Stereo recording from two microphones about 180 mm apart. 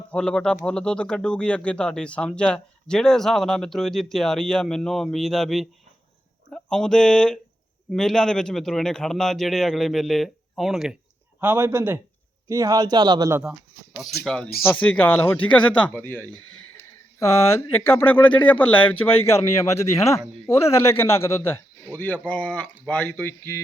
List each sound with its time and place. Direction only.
0.1 s speech: 5° left (ahead or behind)
11.3 s a man's voice: 15° right (ahead or behind)
13.4 s speech: 5° right (ahead or behind); by 23.6 s 15° left (ahead or behind)